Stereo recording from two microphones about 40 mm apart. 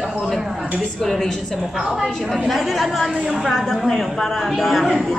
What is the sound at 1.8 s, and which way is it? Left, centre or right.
Speech, centre.